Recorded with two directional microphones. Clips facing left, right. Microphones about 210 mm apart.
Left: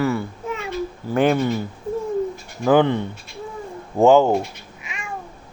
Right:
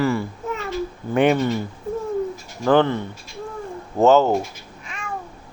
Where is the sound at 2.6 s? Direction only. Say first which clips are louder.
Left 1 dB; 10° left (ahead or behind).